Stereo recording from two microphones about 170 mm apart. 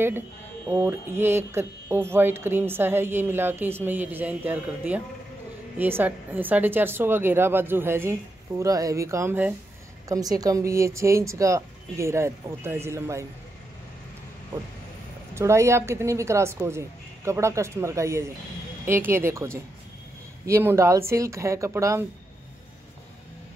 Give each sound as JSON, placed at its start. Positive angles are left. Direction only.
{"t": 0.7, "sound": "speech", "side_deg": -10}
{"t": 15.3, "sound": "speech", "side_deg": -15}